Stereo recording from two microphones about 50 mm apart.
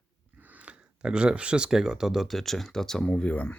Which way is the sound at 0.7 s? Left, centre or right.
Centre.